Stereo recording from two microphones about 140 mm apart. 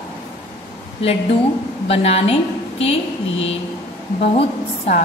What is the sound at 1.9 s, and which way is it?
Speech, 50° left (ahead or behind).